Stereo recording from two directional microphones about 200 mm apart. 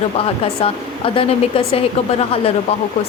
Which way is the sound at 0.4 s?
30° left (ahead or behind).